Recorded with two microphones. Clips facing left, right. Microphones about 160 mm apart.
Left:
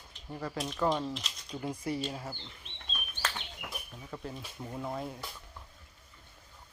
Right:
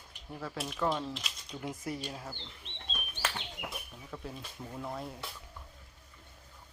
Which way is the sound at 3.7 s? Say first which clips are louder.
Left 1 dB; centre (ahead or behind).